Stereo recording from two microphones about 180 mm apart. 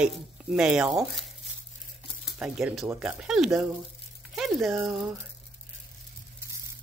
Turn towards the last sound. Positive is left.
turn(degrees=-15)  # may be behind; listen again after turning